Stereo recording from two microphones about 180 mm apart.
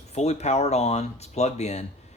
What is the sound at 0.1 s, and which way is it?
Speech, 35° left (ahead or behind).